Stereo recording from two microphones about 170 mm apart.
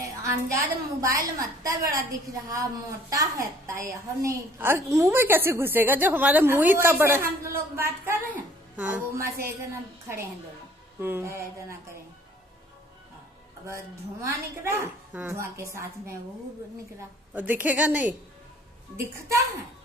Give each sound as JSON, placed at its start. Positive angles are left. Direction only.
{"t": 0.0, "sound": "a sound", "side_deg": -15}
{"t": 1.0, "sound": "a woman's voice", "side_deg": -20}
{"t": 11.0, "sound": "a woman's voice", "side_deg": -15}
{"t": 14.6, "sound": "a woman's voice", "side_deg": -15}
{"t": 17.3, "sound": "a woman's voice", "side_deg": -10}